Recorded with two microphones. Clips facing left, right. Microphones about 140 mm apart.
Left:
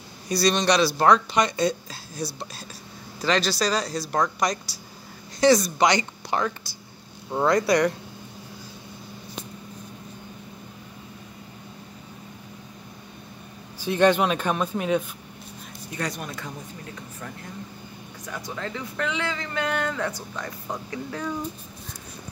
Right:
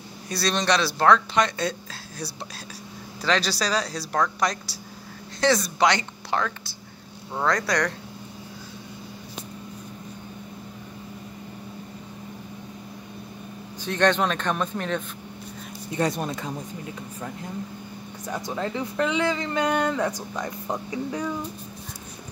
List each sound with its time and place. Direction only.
0.3 s speech: centre (ahead or behind)
3.3 s speech: 5° right (ahead or behind)
4.1 s speech: 10° left (ahead or behind)
13.8 s speech: 10° left (ahead or behind)
15.9 s speech: 25° right (ahead or behind)
18.3 s speech: 20° right (ahead or behind)